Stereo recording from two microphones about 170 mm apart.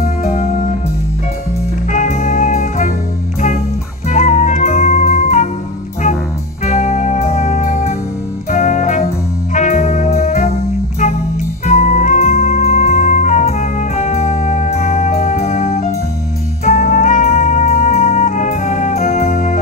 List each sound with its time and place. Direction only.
0.0 s music: 50° left (ahead or behind)
1.9 s music: 45° left (ahead or behind)
4.1 s music: 45° left (ahead or behind)
6.6 s music: 45° left (ahead or behind)
11.6 s music: 45° left (ahead or behind)